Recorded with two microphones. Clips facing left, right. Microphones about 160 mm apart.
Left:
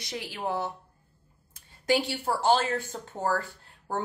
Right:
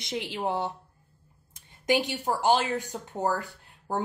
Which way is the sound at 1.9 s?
15° right (ahead or behind).